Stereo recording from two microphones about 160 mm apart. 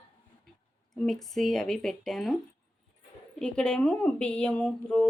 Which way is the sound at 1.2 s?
Centre (ahead or behind).